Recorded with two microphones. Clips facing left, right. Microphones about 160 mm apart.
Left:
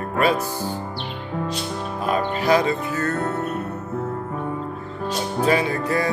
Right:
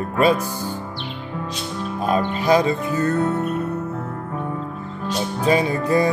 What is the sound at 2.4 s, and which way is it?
Speech, 20° right (ahead or behind).